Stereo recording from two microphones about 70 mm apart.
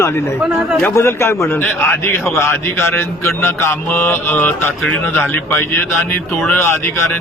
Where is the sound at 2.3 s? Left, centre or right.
Left.